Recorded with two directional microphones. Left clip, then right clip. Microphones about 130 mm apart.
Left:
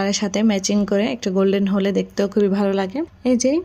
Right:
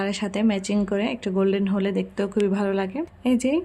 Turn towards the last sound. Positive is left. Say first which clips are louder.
# left 4 dB
turn(degrees=20)  # may be behind; listen again after turning